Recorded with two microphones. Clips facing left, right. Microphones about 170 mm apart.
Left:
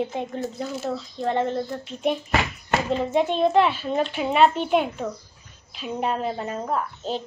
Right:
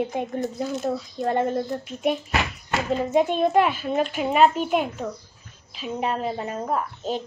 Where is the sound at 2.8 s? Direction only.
10° right (ahead or behind).